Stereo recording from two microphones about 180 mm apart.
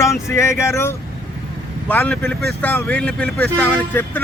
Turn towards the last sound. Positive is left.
turn(degrees=10)  # may be behind; listen again after turning